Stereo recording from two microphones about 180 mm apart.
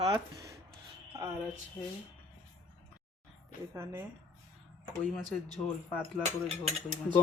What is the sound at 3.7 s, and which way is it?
Speech, 15° right (ahead or behind).